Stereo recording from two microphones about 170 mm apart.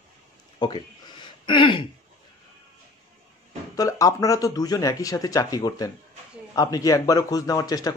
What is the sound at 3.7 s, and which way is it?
A man's voice, 20° left (ahead or behind).